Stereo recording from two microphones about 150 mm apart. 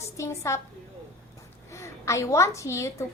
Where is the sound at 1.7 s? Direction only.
20° left (ahead or behind).